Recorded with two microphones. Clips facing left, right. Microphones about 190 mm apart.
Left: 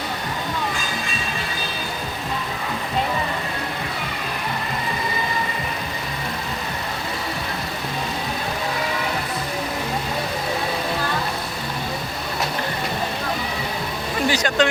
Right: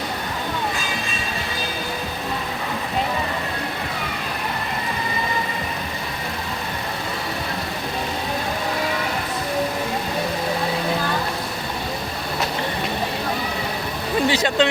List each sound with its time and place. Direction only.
14.3 s vehicle: 25° right (ahead or behind)